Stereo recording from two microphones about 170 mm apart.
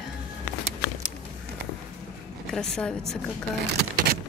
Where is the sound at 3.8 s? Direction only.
65° right (ahead or behind).